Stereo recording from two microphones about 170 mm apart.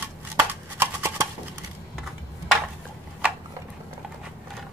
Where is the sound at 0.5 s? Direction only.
15° right (ahead or behind).